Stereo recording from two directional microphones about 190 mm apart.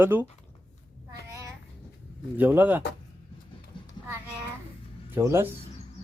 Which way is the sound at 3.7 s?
25° left (ahead or behind).